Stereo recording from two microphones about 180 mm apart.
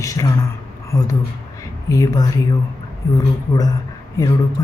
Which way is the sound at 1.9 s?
20° left (ahead or behind).